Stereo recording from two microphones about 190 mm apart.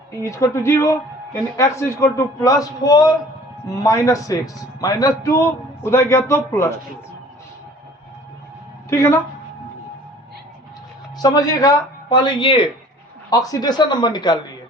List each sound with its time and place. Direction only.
0.2 s a man's voice: 15° left (ahead or behind)
8.9 s a man's voice: 15° left (ahead or behind)
11.2 s speech: 20° left (ahead or behind)